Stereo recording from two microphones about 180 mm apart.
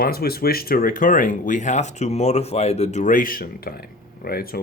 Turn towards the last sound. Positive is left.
turn(degrees=55)  # may be behind; listen again after turning